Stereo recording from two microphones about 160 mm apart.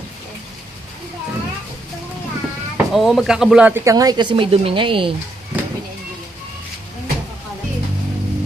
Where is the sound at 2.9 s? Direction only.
Centre (ahead or behind); by 5.1 s 30° right (ahead or behind).